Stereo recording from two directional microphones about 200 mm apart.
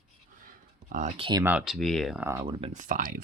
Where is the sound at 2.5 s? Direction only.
35° right (ahead or behind).